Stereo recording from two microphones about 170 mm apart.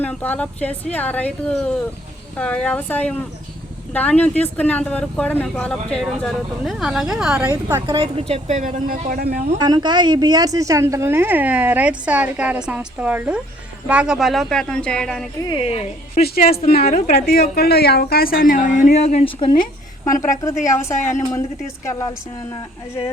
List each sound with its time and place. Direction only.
0.0 s speech: 10° left (ahead or behind)
7.3 s a woman's voice: 15° right (ahead or behind)
7.9 s a woman's voice: 30° right (ahead or behind); by 9.4 s 60° right (ahead or behind)
9.6 s a woman's voice: 25° right (ahead or behind); by 15.3 s 5° left (ahead or behind)
15.4 s a woman's voice: 30° left (ahead or behind)
16.2 s a woman's voice: 60° left (ahead or behind); by 19.6 s 30° left (ahead or behind)
20.4 s speech: 15° left (ahead or behind)